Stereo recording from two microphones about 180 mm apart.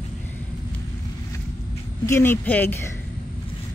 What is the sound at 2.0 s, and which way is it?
Speech, 15° left (ahead or behind).